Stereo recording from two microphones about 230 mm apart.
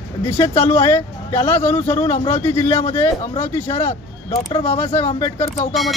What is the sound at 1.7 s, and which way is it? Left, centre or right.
Speech, centre.